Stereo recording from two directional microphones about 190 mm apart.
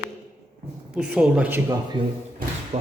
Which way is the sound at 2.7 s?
35° right (ahead or behind).